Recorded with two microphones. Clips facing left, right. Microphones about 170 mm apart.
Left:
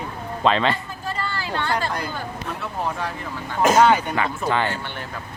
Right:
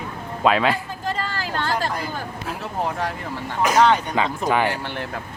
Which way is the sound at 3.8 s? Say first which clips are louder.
Right 1 dB; 5° left (ahead or behind).